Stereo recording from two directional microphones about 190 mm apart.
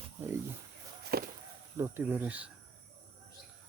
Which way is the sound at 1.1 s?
55° right (ahead or behind).